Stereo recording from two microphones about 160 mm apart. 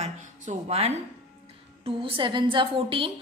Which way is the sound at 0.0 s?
40° right (ahead or behind).